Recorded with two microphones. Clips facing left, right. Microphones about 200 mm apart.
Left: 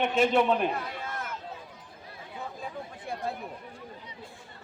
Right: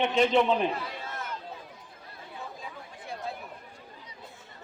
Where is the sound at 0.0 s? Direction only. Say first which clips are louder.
Even; 5° left (ahead or behind).